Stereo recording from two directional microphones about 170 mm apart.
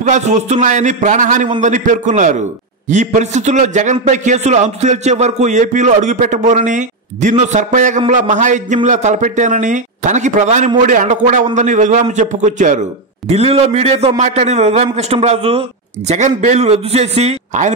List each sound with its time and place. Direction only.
0.1 s a man's voice: 45° right (ahead or behind)